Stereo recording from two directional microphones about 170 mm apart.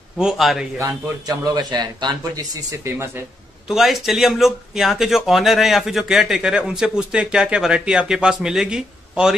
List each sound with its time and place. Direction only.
0.2 s speech: centre (ahead or behind)
0.7 s a man's voice: 20° right (ahead or behind)
3.6 s speech: centre (ahead or behind)